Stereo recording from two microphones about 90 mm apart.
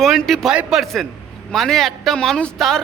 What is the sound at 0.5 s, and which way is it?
Speech, 15° right (ahead or behind).